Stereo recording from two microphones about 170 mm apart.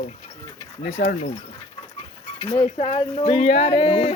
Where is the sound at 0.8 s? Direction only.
45° left (ahead or behind).